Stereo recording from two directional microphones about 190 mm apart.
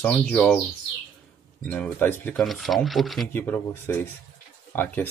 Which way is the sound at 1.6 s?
5° left (ahead or behind).